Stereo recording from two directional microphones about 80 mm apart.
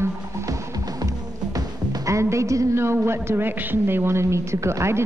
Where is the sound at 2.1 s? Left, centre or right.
Right.